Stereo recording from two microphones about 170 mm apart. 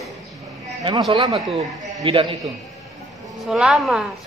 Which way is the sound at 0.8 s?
30° right (ahead or behind).